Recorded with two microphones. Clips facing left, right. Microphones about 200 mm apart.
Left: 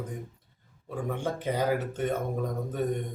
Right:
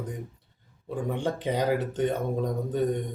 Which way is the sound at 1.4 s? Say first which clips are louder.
Right 1 dB; 15° right (ahead or behind).